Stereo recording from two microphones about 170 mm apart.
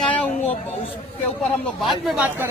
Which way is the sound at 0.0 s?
10° left (ahead or behind).